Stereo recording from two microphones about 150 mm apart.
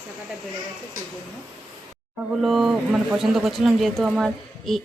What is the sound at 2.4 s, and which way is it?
Speech, centre (ahead or behind).